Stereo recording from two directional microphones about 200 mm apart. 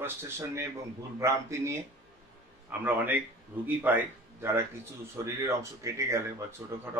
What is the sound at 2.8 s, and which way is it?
Speech, 10° right (ahead or behind).